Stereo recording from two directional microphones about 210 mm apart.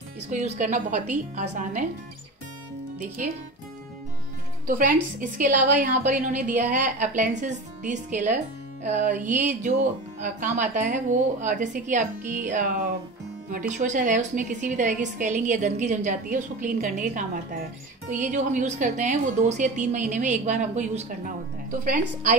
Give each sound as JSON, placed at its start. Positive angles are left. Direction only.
{"t": 0.3, "sound": "a woman's voice", "side_deg": -35}
{"t": 4.6, "sound": "a woman's voice", "side_deg": -40}